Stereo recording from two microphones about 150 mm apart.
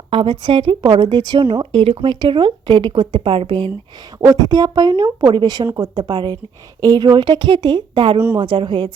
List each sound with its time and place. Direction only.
0.1 s a woman's voice: 35° right (ahead or behind)